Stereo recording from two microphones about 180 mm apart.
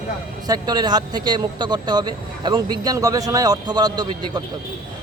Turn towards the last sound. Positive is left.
turn(degrees=-25)  # may be behind; listen again after turning